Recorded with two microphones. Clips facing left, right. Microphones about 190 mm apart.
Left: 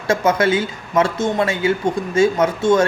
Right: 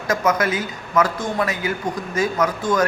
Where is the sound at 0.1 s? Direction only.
30° left (ahead or behind).